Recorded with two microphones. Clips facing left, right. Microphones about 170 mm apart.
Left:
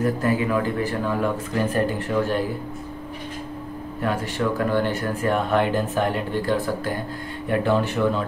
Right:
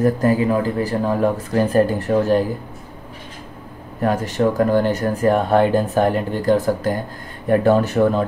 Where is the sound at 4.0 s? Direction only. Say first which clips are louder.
Right 6 dB; 40° right (ahead or behind).